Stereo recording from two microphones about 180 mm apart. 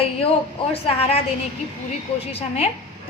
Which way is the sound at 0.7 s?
30° left (ahead or behind).